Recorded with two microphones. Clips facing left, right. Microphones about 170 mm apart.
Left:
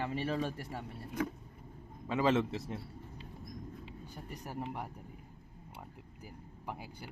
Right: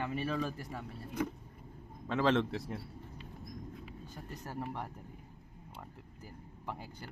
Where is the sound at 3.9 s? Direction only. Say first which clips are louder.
Even; 15° left (ahead or behind).